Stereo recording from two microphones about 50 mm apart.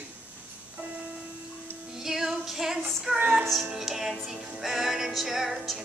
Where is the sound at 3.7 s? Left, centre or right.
Centre.